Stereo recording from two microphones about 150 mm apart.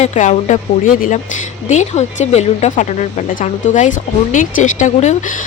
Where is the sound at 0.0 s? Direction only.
50° left (ahead or behind).